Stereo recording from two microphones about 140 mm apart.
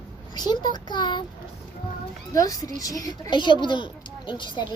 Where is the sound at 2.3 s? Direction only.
25° left (ahead or behind).